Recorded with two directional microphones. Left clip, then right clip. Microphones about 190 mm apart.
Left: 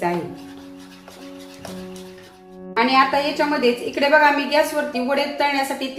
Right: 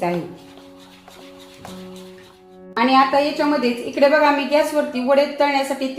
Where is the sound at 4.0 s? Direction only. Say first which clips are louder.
Right 1 dB; 15° right (ahead or behind).